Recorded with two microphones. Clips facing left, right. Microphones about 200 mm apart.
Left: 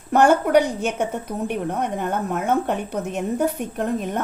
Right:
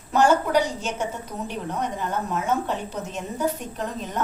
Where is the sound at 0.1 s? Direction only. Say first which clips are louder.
Left 4 dB; 60° left (ahead or behind).